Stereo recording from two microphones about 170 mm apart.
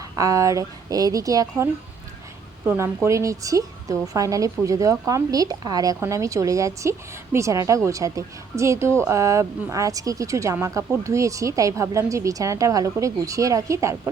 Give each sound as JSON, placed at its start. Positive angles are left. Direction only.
{"t": 0.2, "sound": "speech", "side_deg": -20}